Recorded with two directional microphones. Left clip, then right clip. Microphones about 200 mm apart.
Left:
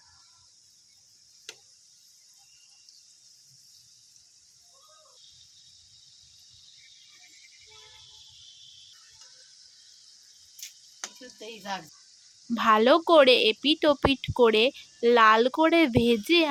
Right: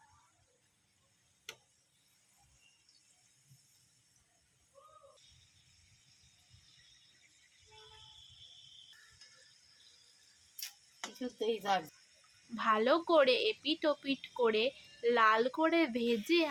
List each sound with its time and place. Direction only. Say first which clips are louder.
11.3 s speech: right 3 dB; 55° right (ahead or behind)
12.5 s a woman's voice: left 10 dB; 40° left (ahead or behind)